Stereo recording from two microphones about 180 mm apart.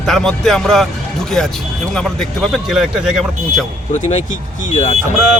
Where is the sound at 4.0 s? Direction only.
40° left (ahead or behind).